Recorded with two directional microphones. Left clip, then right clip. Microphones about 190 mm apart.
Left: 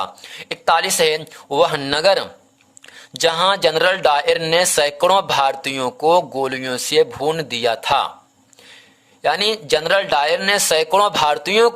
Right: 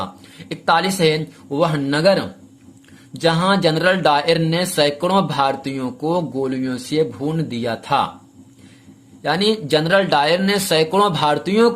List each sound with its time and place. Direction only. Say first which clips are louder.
0.0 s speech: left 3 dB; 35° left (ahead or behind)
9.2 s speech: left 1 dB; 35° left (ahead or behind)